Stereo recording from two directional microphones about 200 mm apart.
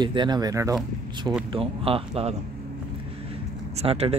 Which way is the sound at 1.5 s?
30° right (ahead or behind).